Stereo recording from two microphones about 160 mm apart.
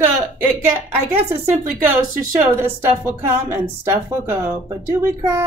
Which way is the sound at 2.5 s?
15° right (ahead or behind).